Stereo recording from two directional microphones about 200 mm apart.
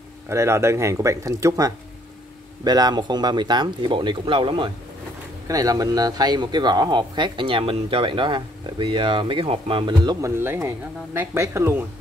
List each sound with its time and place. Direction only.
0.3 s speech: 15° right (ahead or behind)